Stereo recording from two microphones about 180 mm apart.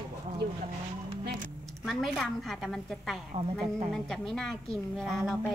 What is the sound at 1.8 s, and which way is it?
A woman's voice, centre (ahead or behind).